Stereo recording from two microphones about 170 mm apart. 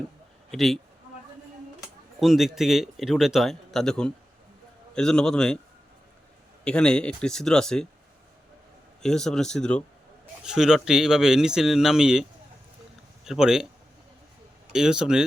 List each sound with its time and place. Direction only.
0.5 s a man's voice: centre (ahead or behind)
2.2 s a man's voice: centre (ahead or behind)
6.7 s a man's voice: 5° left (ahead or behind)
9.0 s a man's voice: 5° left (ahead or behind)
13.2 s a man's voice: 5° right (ahead or behind)
14.7 s a man's voice: 5° right (ahead or behind)